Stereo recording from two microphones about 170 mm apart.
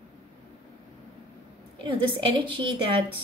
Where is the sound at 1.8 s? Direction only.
30° right (ahead or behind).